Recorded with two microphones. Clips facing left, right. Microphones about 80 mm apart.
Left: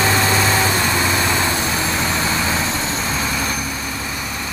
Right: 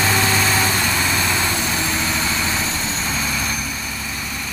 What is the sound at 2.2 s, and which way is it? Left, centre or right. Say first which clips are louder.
Vehicle: left 3 dB; left.